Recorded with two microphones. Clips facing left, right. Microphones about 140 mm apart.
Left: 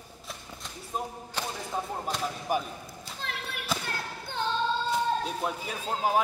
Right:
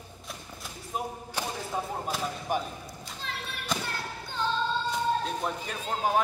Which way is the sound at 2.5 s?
5° left (ahead or behind).